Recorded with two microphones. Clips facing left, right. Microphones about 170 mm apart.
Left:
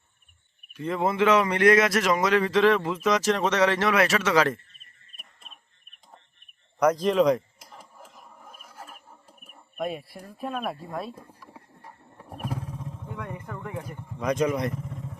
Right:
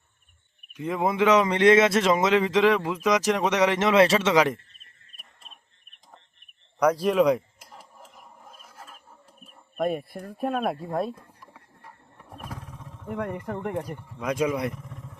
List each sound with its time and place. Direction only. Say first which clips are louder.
0.7 s speech: even; 15° right (ahead or behind)
6.9 s a sound: right 1 dB; 10° right (ahead or behind)
9.7 s speech: right 5 dB; 50° right (ahead or behind)
11.5 s horse: left 2 dB; 25° left (ahead or behind)
13.1 s speech: right 8 dB; 65° right (ahead or behind)
13.5 s speech: right 7 dB; 55° right (ahead or behind)
14.2 s speech: left 1 dB; 5° right (ahead or behind)